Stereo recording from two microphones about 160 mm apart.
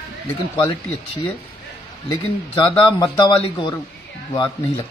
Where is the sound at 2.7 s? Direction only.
30° left (ahead or behind).